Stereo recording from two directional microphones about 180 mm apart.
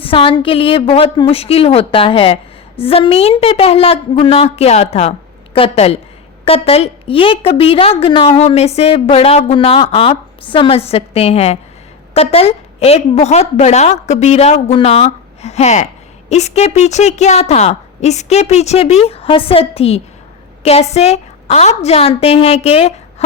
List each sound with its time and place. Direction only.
0.0 s a woman's voice: 30° left (ahead or behind)